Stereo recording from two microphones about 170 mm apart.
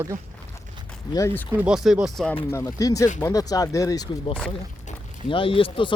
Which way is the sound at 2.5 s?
20° left (ahead or behind).